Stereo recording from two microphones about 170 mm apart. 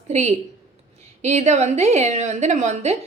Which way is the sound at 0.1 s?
40° right (ahead or behind).